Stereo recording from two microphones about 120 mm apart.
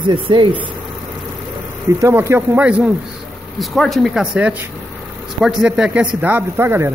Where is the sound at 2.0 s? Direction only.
25° right (ahead or behind).